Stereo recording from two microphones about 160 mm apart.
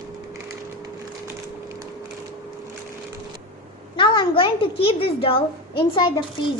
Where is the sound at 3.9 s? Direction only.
30° left (ahead or behind).